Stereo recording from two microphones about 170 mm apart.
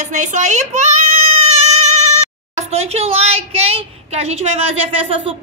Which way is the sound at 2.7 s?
40° right (ahead or behind).